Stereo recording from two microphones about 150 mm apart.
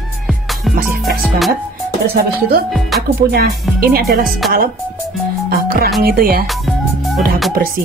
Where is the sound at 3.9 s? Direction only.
75° right (ahead or behind).